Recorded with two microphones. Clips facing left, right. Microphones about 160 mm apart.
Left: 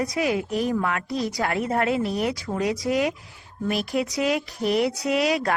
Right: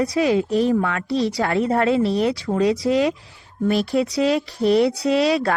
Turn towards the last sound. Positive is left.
turn(degrees=-30)  # may be behind; listen again after turning